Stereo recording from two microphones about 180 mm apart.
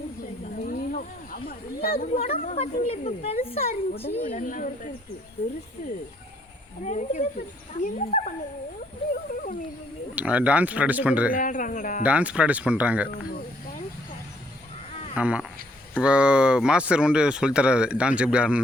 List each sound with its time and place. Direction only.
0.6 s snake: 50° left (ahead or behind)
2.4 s speech: 45° left (ahead or behind)
6.8 s speech: 40° left (ahead or behind)
9.3 s a sound: 45° left (ahead or behind)
10.2 s speech: 5° right (ahead or behind)
11.3 s speech: 45° left (ahead or behind)
12.0 s speech: 5° right (ahead or behind)
15.1 s speech: 5° right (ahead or behind)